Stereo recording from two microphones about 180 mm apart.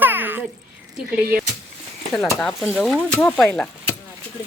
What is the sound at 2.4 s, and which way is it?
Speech, centre (ahead or behind).